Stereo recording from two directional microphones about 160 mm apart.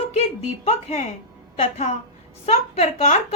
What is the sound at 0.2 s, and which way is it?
A woman's voice, 45° left (ahead or behind).